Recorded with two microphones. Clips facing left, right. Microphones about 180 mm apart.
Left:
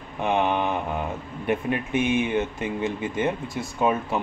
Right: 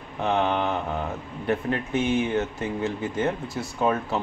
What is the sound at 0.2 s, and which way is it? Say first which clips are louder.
Speech: left 1 dB; 15° left (ahead or behind).